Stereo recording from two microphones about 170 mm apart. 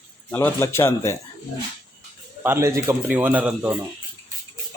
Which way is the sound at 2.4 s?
15° right (ahead or behind).